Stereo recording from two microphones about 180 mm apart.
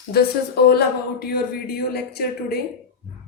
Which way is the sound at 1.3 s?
60° left (ahead or behind).